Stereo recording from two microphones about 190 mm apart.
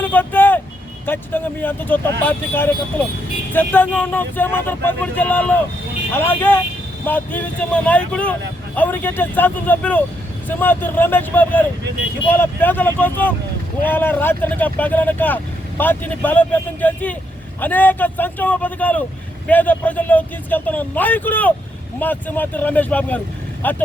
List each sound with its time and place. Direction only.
0.0 s vehicle: 10° left (ahead or behind)
1.0 s speech: 10° left (ahead or behind)